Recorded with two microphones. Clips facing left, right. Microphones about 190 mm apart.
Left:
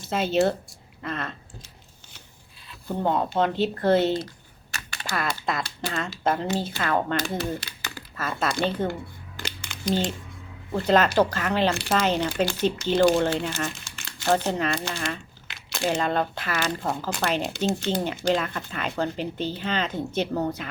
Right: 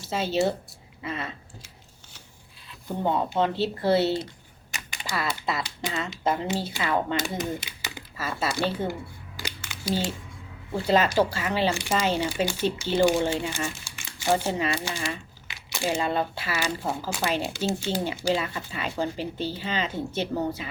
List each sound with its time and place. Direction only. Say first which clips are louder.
0.1 s speech: left 3 dB; 5° right (ahead or behind)
3.0 s speech: left 1 dB; 5° right (ahead or behind)
4.7 s typing: left 1 dB; 15° right (ahead or behind)
5.1 s speech: left 1 dB; 5° right (ahead or behind)
9.4 s a sound: left 3 dB; 5° right (ahead or behind)
10.8 s speech: left 2 dB; 5° right (ahead or behind)